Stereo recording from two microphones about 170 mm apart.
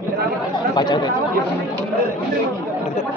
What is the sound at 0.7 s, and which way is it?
Speech, 25° left (ahead or behind).